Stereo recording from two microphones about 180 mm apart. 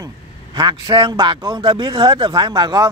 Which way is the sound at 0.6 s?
25° right (ahead or behind).